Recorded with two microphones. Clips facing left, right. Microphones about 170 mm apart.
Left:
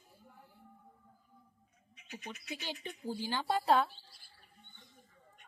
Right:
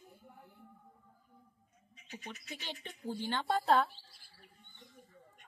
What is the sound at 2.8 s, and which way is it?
Speech, 10° left (ahead or behind).